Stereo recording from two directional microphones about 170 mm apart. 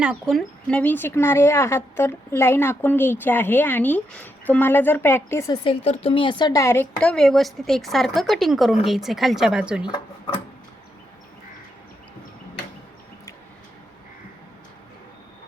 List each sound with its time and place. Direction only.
0.0 s speech: 5° right (ahead or behind); by 5.7 s 20° left (ahead or behind)
5.8 s speech: 35° left (ahead or behind); by 9.8 s 5° right (ahead or behind)
9.8 s speech: 30° left (ahead or behind)